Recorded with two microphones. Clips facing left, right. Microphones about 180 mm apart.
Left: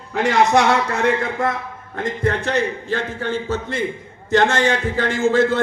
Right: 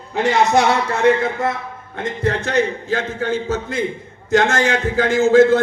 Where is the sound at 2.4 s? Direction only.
40° right (ahead or behind).